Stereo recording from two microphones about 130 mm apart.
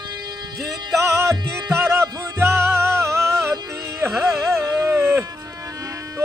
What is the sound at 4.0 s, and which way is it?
Carnatic music, 20° right (ahead or behind).